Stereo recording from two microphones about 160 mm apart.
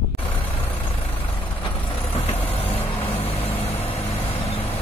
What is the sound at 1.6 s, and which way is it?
Vehicle, 35° left (ahead or behind).